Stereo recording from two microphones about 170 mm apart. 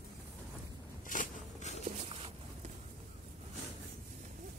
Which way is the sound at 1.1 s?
45° left (ahead or behind).